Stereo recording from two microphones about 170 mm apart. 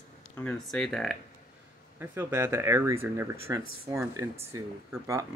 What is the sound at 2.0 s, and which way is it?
Speech, 15° right (ahead or behind).